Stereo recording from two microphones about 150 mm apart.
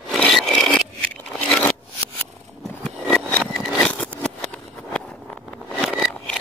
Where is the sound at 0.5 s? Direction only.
5° left (ahead or behind).